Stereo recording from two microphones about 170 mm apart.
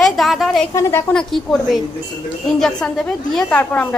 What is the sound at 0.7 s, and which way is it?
Speech, 15° left (ahead or behind).